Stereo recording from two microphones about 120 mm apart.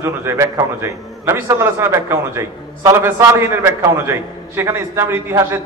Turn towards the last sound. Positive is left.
turn(degrees=-20)  # may be behind; listen again after turning